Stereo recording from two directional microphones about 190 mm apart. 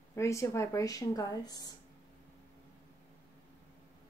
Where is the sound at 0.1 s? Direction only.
15° left (ahead or behind).